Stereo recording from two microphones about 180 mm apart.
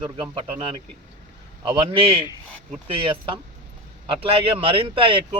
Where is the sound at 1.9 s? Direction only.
30° right (ahead or behind).